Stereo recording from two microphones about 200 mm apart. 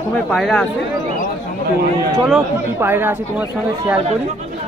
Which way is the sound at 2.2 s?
10° right (ahead or behind).